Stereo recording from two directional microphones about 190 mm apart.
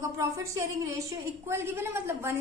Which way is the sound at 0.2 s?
15° right (ahead or behind).